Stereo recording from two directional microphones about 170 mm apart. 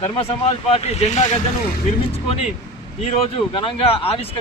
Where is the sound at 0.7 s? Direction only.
40° left (ahead or behind).